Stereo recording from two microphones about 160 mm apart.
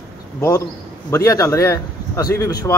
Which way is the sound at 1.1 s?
20° left (ahead or behind).